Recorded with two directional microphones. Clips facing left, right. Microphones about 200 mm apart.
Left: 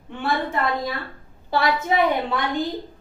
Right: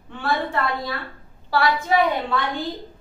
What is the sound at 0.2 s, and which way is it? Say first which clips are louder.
A woman's voice: even; 20° left (ahead or behind).